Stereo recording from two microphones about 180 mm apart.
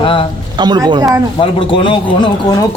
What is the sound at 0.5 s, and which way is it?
Speech, 25° right (ahead or behind).